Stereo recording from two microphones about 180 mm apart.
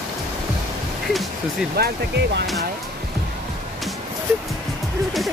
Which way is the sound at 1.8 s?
65° right (ahead or behind).